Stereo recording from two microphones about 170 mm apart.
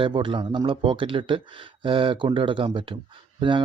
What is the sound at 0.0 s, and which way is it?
Speech, 30° right (ahead or behind).